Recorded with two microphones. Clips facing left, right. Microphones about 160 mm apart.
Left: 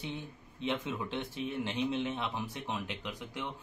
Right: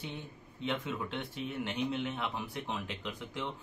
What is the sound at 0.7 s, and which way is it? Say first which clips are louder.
Speech: left 1 dB; 20° left (ahead or behind).